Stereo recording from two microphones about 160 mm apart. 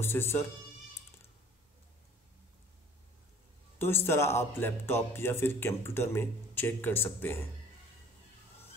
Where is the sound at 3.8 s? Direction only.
15° left (ahead or behind).